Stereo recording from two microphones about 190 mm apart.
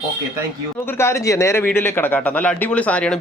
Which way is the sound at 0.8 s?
15° left (ahead or behind).